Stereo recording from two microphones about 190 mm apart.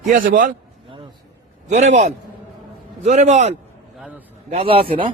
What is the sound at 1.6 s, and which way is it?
A man's voice, 40° right (ahead or behind).